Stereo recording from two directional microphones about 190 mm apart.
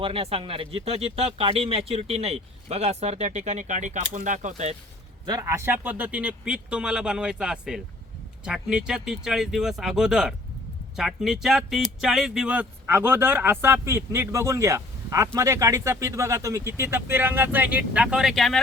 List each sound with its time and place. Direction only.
0.0 s speech: 30° right (ahead or behind)
5.2 s speech: 20° right (ahead or behind); by 18.6 s centre (ahead or behind)